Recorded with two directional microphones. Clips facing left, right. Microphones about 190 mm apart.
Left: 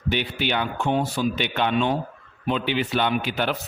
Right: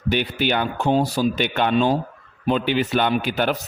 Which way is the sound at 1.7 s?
35° right (ahead or behind).